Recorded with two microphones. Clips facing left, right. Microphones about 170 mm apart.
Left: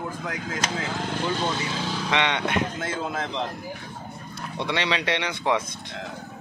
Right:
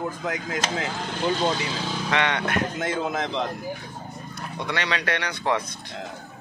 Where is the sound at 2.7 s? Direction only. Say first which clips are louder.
Right 3 dB; 20° right (ahead or behind).